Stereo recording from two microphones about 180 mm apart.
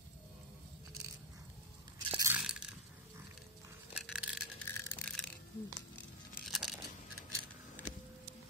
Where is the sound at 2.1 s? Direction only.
10° right (ahead or behind).